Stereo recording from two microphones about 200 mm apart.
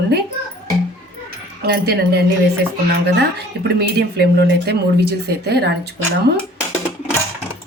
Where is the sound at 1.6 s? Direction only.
55° right (ahead or behind).